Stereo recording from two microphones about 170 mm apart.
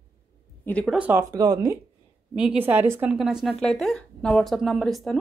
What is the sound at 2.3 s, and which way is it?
A woman's voice, 5° right (ahead or behind).